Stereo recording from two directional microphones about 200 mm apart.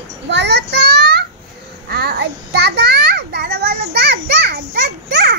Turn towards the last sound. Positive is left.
turn(degrees=-55)  # may be behind; listen again after turning